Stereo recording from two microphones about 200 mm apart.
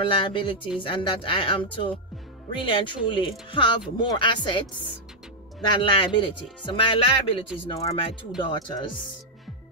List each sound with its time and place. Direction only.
0.0 s speech: 25° left (ahead or behind)